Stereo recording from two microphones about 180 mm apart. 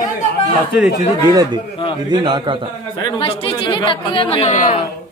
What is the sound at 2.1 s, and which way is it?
Speech, 25° right (ahead or behind).